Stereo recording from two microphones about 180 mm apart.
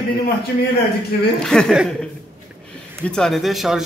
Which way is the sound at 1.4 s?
Centre (ahead or behind).